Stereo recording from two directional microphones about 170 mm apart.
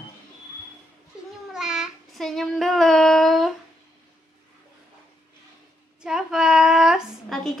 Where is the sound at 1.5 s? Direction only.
5° right (ahead or behind).